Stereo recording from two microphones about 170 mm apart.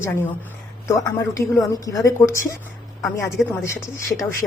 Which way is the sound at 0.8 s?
20° left (ahead or behind).